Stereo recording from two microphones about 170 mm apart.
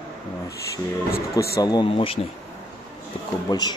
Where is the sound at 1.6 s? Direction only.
25° left (ahead or behind).